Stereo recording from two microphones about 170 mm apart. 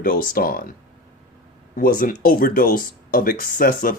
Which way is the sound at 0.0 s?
55° left (ahead or behind).